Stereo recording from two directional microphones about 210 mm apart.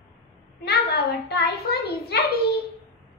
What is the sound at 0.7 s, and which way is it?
A child's voice, 50° left (ahead or behind).